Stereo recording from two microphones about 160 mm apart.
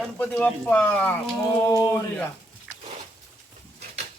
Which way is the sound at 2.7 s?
5° right (ahead or behind).